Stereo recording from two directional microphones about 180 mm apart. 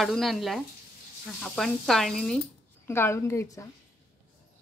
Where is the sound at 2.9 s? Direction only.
15° left (ahead or behind).